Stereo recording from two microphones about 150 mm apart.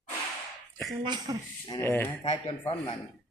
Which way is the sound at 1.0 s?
30° right (ahead or behind).